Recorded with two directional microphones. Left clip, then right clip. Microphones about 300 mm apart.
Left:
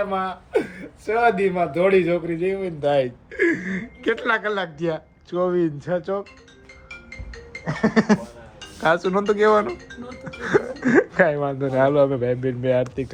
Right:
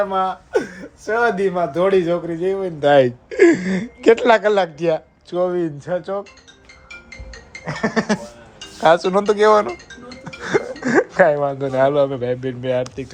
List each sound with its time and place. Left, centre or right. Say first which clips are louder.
0.1 s speech: right 4 dB; centre
2.8 s speech: right 8 dB; right
3.3 s speech: right 8 dB; centre
7.6 s a sound: even; centre
8.8 s speech: right 6 dB; centre